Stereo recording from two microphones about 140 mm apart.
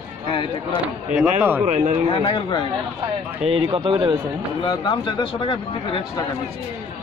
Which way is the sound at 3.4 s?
50° right (ahead or behind).